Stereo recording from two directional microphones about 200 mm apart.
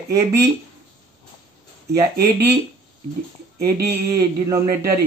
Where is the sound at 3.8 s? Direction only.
50° right (ahead or behind).